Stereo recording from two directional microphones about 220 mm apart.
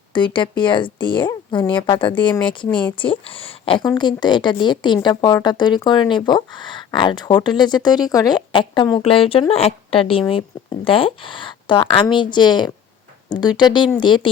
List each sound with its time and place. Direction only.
0.3 s a woman's voice: 20° left (ahead or behind)